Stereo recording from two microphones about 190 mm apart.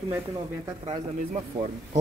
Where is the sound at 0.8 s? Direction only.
35° right (ahead or behind).